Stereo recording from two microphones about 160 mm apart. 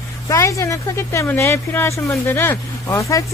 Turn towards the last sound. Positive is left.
turn(degrees=20)  # may be behind; listen again after turning